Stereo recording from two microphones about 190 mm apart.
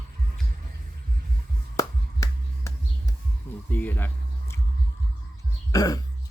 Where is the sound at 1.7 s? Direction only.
15° left (ahead or behind).